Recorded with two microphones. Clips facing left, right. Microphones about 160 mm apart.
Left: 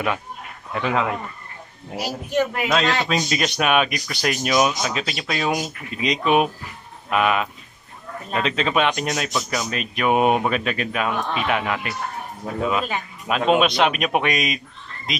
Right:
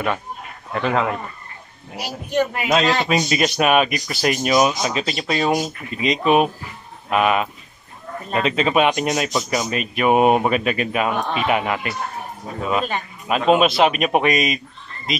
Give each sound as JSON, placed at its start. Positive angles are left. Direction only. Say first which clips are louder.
{"t": 0.8, "sound": "speech", "louder": "right 2 dB", "side_deg": 0}